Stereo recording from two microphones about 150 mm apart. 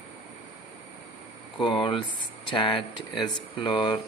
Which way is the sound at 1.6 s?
35° left (ahead or behind).